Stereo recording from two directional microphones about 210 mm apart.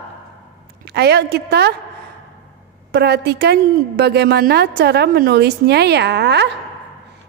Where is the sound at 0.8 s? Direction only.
50° right (ahead or behind).